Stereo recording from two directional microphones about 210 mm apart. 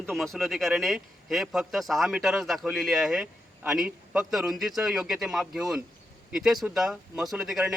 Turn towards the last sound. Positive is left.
turn(degrees=0)  # may be behind; listen again after turning